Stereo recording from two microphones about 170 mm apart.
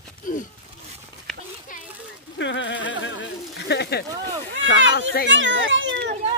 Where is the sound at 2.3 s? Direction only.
90° left.